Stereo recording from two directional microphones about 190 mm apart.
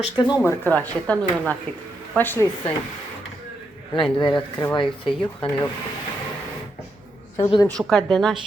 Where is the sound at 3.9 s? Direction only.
25° left (ahead or behind).